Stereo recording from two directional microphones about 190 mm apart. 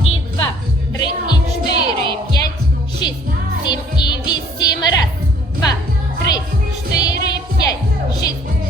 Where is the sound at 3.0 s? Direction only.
20° left (ahead or behind).